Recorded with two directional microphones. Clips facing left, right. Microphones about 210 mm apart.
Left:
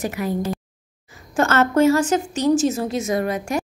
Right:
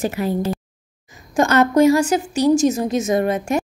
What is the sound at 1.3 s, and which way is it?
A woman's voice, 15° right (ahead or behind).